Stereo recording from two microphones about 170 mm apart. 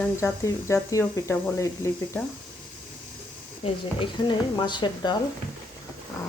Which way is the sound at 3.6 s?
30° left (ahead or behind).